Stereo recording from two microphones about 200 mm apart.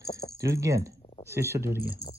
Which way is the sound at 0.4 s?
15° right (ahead or behind).